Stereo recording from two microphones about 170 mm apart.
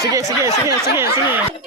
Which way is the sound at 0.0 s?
20° right (ahead or behind).